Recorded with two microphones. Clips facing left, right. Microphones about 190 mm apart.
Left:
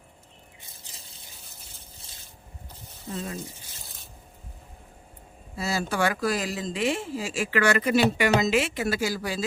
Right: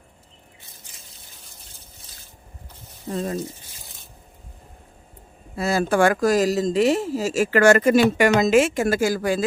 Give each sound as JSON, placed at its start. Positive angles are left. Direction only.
{"t": 3.1, "sound": "speech", "side_deg": -45}
{"t": 5.5, "sound": "speech", "side_deg": -55}